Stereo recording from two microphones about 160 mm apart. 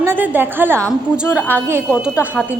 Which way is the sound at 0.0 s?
15° right (ahead or behind).